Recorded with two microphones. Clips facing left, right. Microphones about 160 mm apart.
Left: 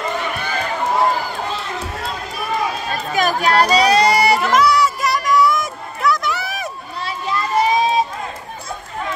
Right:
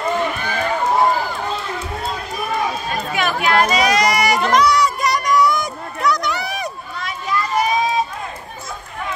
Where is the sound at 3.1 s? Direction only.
40° left (ahead or behind).